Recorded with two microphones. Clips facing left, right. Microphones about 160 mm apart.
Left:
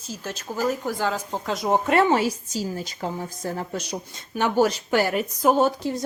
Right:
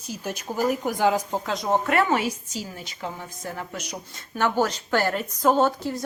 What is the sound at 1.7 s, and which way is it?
Speech, 20° left (ahead or behind).